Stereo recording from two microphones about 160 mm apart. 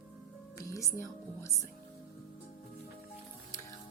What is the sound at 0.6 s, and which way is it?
Speech, 20° left (ahead or behind).